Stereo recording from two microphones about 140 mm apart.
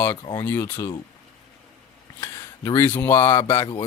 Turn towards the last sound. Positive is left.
turn(degrees=25)  # may be behind; listen again after turning